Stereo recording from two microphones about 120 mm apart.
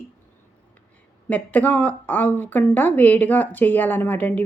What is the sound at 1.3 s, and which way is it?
Speech, 15° left (ahead or behind).